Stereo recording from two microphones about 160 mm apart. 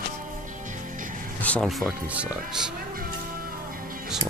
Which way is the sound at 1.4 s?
5° left (ahead or behind).